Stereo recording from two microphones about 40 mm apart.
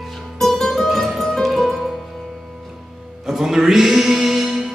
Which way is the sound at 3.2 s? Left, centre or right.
Centre.